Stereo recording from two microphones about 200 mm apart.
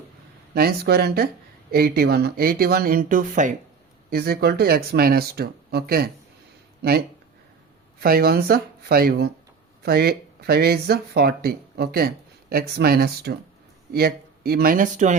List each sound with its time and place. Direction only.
0.5 s speech: 50° right (ahead or behind)
4.1 s speech: 50° right (ahead or behind)
8.0 s speech: 50° right (ahead or behind)